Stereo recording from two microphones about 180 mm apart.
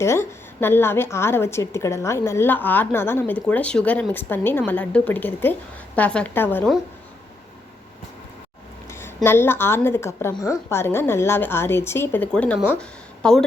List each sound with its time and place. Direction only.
0.0 s a woman's voice: 15° left (ahead or behind)
8.9 s a woman's voice: 15° left (ahead or behind)